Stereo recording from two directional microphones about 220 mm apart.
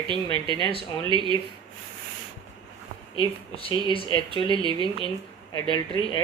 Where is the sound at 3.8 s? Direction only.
20° left (ahead or behind).